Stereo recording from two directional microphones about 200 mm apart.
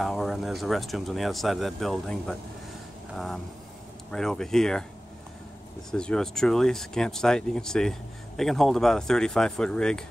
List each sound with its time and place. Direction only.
0.0 s speech: centre (ahead or behind)
4.1 s speech: 5° left (ahead or behind)
5.9 s speech: 5° left (ahead or behind)